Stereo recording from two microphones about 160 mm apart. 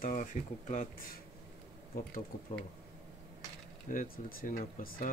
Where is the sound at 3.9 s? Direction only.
60° left (ahead or behind).